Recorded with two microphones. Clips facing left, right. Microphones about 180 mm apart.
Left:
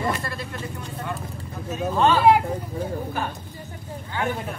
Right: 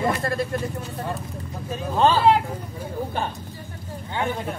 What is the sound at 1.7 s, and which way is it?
Speech, 30° right (ahead or behind).